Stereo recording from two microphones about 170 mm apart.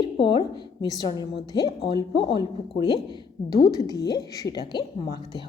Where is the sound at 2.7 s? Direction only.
25° left (ahead or behind).